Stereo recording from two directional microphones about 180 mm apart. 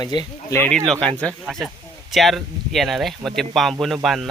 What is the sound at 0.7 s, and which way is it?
Speech, 5° left (ahead or behind).